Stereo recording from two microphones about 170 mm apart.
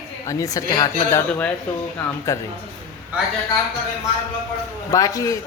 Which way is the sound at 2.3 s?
20° left (ahead or behind).